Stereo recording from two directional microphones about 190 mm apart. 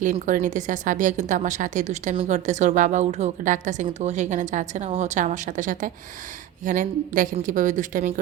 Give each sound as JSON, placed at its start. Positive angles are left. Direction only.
{"t": 0.0, "sound": "a woman's voice", "side_deg": -45}